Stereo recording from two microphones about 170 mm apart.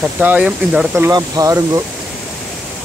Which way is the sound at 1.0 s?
20° right (ahead or behind).